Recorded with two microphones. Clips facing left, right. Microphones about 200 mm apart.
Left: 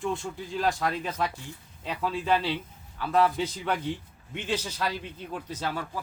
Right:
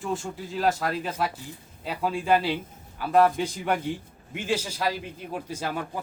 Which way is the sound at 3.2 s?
45° right (ahead or behind).